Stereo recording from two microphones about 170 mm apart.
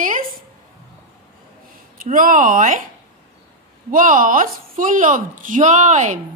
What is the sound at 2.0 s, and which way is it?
Speech, 50° right (ahead or behind).